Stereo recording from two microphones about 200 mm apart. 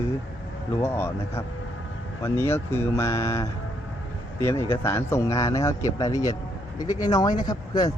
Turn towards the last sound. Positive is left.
turn(degrees=20)  # may be behind; listen again after turning